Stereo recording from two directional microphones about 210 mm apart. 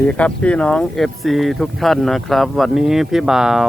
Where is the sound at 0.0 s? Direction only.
5° left (ahead or behind).